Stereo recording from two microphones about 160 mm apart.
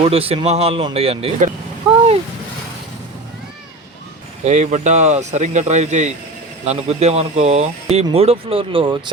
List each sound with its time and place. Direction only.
0.0 s speech: 40° right (ahead or behind)
4.4 s speech: 45° right (ahead or behind)